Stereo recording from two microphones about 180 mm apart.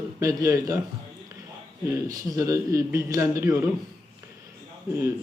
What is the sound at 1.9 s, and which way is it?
A man's voice, 20° right (ahead or behind).